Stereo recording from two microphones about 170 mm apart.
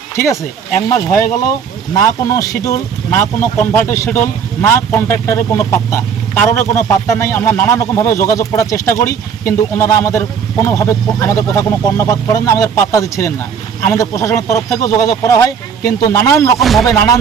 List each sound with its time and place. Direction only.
0.9 s speech: 20° left (ahead or behind)
16.6 s speech: centre (ahead or behind)
16.8 s speech: 20° left (ahead or behind)